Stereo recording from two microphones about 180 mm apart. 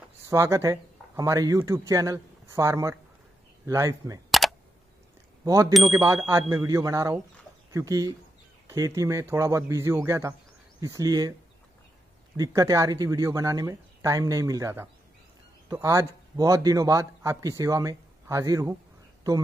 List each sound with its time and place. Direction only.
0.3 s a man's voice: 15° right (ahead or behind)
4.3 s camera: centre (ahead or behind)
5.4 s a man's voice: 20° right (ahead or behind)
12.4 s a man's voice: 20° right (ahead or behind)